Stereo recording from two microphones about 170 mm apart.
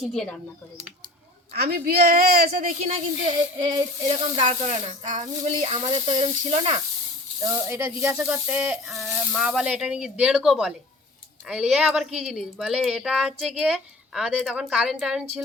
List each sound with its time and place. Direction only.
0.0 s speech: centre (ahead or behind)
1.5 s a woman's voice: 65° right (ahead or behind)
3.2 s child singing: 25° right (ahead or behind)
4.4 s speech: 35° right (ahead or behind)
7.4 s speech: 15° right (ahead or behind)